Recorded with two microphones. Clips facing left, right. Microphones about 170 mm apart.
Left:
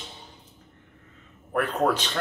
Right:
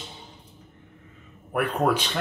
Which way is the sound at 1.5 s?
10° right (ahead or behind).